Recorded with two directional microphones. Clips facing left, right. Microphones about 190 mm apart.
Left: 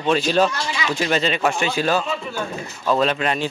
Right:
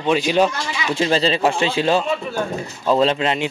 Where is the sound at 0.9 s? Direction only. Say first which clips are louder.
Right 4 dB; 30° right (ahead or behind).